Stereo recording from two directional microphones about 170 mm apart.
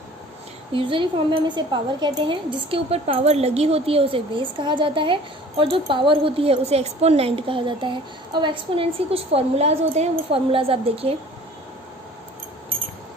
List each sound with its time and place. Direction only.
0.7 s a woman's voice: 30° right (ahead or behind)